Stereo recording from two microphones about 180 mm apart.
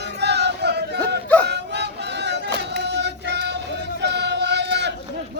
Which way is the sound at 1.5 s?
70° right (ahead or behind).